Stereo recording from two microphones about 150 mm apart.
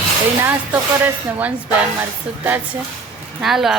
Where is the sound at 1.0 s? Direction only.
10° right (ahead or behind).